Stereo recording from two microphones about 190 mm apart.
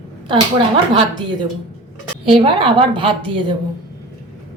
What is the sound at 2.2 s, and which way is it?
A woman's voice, 30° right (ahead or behind).